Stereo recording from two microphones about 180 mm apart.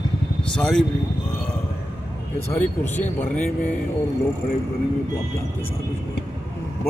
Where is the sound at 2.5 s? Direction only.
10° left (ahead or behind).